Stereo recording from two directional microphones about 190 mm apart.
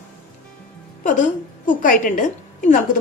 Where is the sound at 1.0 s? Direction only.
40° left (ahead or behind).